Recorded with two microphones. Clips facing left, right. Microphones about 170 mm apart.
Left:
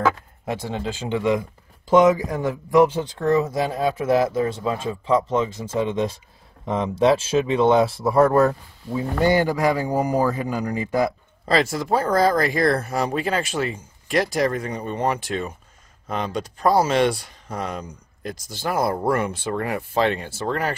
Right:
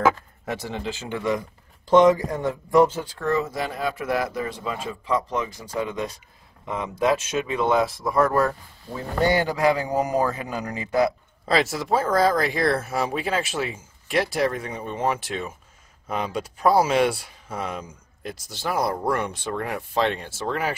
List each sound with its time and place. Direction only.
0.5 s a man's voice: 15° left (ahead or behind)
3.0 s speech: 20° left (ahead or behind)
8.9 s a man's voice: 10° left (ahead or behind)
11.4 s speech: centre (ahead or behind)